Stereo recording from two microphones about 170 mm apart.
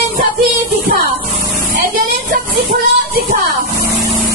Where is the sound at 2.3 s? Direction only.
55° right (ahead or behind).